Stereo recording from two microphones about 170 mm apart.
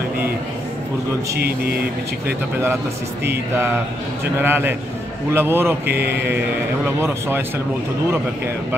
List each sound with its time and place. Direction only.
4.4 s speech: 10° right (ahead or behind)
5.9 s mantra: 70° right (ahead or behind)
6.2 s speech: 10° right (ahead or behind)